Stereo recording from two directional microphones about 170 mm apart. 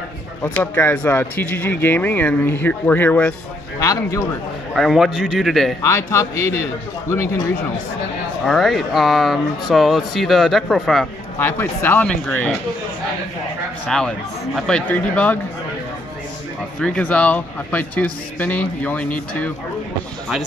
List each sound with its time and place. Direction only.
0.4 s speech: 10° left (ahead or behind)
3.8 s speech: 20° left (ahead or behind)
4.7 s speech: centre (ahead or behind)
5.8 s speech: 15° left (ahead or behind)
8.5 s speech: centre (ahead or behind)
11.3 s speech: 10° left (ahead or behind)
13.8 s speech: 5° left (ahead or behind)
16.8 s speech: 5° left (ahead or behind)